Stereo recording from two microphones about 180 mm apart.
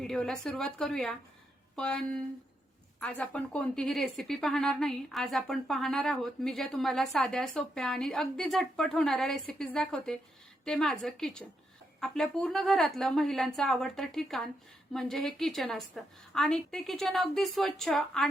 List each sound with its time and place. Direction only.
0.0 s speech: 5° left (ahead or behind)